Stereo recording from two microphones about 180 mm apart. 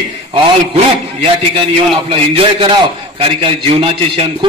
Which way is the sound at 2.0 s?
30° right (ahead or behind).